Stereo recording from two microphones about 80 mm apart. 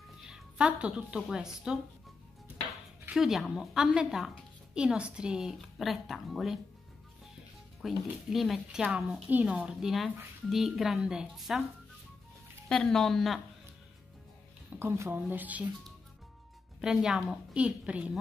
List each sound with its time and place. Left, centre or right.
0.3 s speech: centre
3.1 s a woman's voice: centre
7.8 s a woman's voice: centre
9.3 s a woman's voice: centre
12.6 s a woman's voice: centre
14.8 s speech: right
15.1 s speech: right
16.8 s a woman's voice: centre